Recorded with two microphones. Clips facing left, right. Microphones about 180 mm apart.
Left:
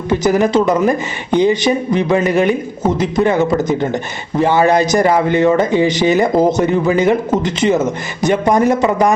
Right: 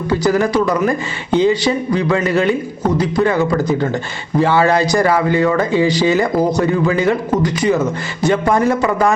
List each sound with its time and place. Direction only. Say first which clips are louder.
0.1 s speech: left 2 dB; 20° left (ahead or behind)